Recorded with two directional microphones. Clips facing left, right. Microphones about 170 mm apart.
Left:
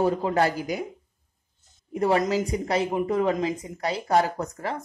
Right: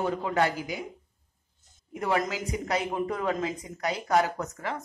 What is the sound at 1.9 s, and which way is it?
A woman's voice, 35° left (ahead or behind).